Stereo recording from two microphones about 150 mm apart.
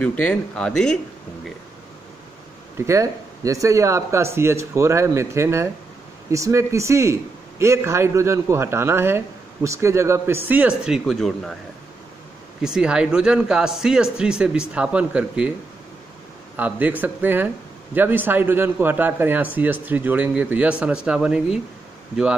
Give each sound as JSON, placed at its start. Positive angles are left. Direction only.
{"t": 0.0, "sound": "speech", "side_deg": 10}
{"t": 2.8, "sound": "a man's voice", "side_deg": -20}
{"t": 12.6, "sound": "speech", "side_deg": -5}
{"t": 16.5, "sound": "a man's voice", "side_deg": -10}